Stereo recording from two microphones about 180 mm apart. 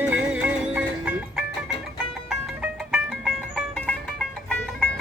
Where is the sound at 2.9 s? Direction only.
5° right (ahead or behind).